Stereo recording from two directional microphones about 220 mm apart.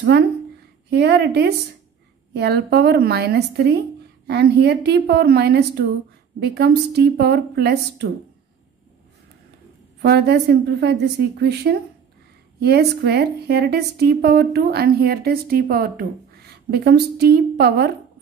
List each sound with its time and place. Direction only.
0.9 s a woman's voice: 50° right (ahead or behind)
10.0 s a woman's voice: 45° right (ahead or behind)